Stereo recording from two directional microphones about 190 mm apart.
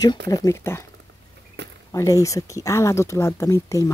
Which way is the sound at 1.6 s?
65° right (ahead or behind).